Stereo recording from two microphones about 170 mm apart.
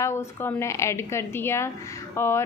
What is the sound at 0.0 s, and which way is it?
A woman's voice, 15° left (ahead or behind).